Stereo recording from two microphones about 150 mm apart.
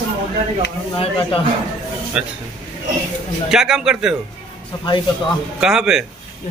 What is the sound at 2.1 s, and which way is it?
Speech, 5° right (ahead or behind).